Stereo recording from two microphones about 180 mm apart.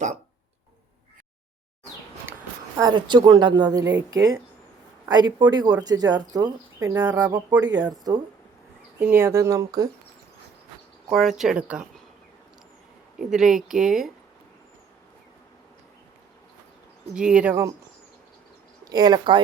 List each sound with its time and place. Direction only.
2.7 s speech: 25° right (ahead or behind)
9.0 s speech: 10° right (ahead or behind)
11.1 s speech: centre (ahead or behind)
13.1 s speech: 5° right (ahead or behind)
17.2 s speech: 5° right (ahead or behind)
18.9 s speech: 20° right (ahead or behind)